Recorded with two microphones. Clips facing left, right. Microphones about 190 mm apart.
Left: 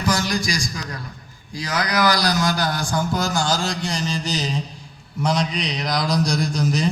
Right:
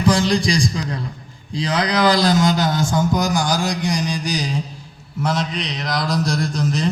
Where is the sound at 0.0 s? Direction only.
30° right (ahead or behind).